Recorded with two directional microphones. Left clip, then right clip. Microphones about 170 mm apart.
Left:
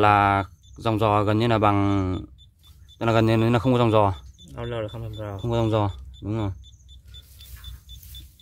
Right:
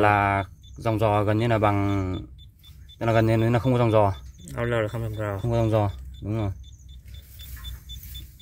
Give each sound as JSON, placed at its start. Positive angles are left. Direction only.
{"t": 0.0, "sound": "speech", "side_deg": 25}
{"t": 4.5, "sound": "speech", "side_deg": -5}
{"t": 5.4, "sound": "speech", "side_deg": 20}